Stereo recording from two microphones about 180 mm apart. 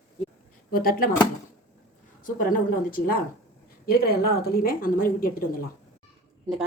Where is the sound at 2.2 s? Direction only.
50° left (ahead or behind).